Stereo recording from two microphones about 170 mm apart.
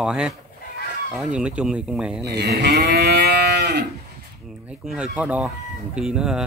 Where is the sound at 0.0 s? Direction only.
5° right (ahead or behind).